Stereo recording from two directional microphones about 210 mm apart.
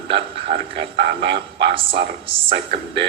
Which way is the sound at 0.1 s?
25° right (ahead or behind).